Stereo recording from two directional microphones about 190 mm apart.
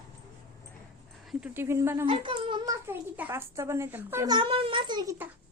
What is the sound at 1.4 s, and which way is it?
Speech, 10° right (ahead or behind).